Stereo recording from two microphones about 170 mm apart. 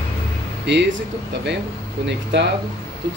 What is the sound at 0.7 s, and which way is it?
Speech, 90° right.